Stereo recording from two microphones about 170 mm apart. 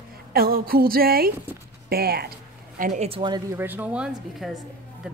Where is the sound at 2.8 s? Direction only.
45° right (ahead or behind).